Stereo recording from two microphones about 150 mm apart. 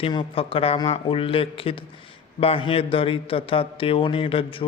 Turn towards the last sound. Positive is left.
turn(degrees=35)  # may be behind; listen again after turning